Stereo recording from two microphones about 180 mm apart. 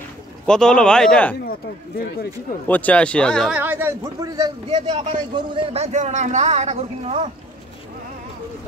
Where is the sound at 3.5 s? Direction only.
10° right (ahead or behind); by 7.3 s 35° right (ahead or behind).